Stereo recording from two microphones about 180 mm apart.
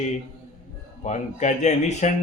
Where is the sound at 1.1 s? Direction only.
40° left (ahead or behind).